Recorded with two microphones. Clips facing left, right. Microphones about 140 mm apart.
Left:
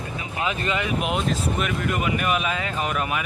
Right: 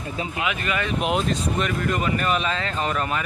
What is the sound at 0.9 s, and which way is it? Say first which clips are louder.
Speech: right 1 dB; centre (ahead or behind).